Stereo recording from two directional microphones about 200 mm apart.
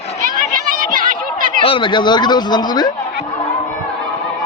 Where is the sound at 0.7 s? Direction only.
45° right (ahead or behind).